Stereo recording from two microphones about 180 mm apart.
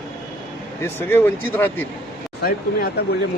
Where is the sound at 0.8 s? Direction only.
10° left (ahead or behind).